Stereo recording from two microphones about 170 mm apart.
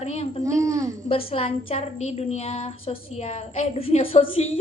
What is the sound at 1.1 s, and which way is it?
A woman's voice, 35° left (ahead or behind).